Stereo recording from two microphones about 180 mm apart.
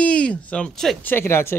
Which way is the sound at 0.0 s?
5° left (ahead or behind).